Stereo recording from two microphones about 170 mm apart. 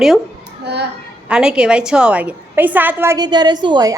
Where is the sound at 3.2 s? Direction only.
25° right (ahead or behind).